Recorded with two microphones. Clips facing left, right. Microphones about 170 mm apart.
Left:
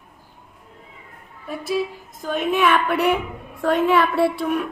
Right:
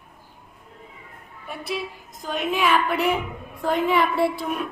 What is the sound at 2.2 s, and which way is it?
A woman's voice, 60° left (ahead or behind).